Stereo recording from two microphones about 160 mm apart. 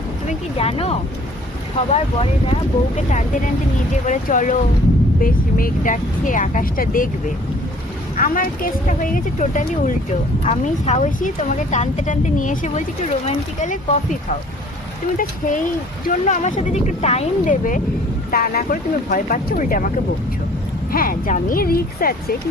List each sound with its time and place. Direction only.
0.3 s speech: 40° left (ahead or behind)
3.1 s speech: 50° left (ahead or behind)
8.1 s speech: 60° left (ahead or behind)
16.2 s speech: 50° left (ahead or behind)
18.3 s speech: 65° left (ahead or behind)
20.9 s speech: 60° left (ahead or behind)